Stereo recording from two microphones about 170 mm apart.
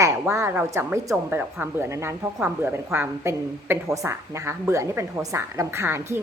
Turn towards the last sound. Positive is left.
turn(degrees=-15)  # may be behind; listen again after turning